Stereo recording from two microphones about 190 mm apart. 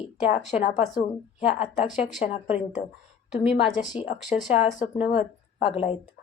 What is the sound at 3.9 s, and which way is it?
Speech, 30° left (ahead or behind).